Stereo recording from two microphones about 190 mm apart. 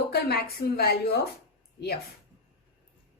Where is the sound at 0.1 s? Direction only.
55° left (ahead or behind).